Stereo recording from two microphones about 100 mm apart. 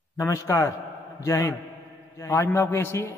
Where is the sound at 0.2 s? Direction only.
30° left (ahead or behind).